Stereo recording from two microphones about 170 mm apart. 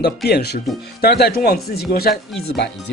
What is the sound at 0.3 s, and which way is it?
Speech, 70° left (ahead or behind).